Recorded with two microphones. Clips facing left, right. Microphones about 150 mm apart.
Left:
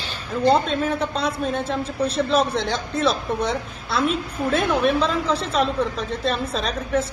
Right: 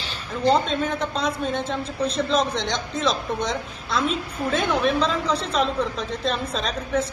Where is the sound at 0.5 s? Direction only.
5° left (ahead or behind).